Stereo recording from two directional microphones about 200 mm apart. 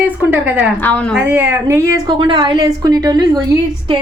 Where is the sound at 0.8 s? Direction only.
5° left (ahead or behind).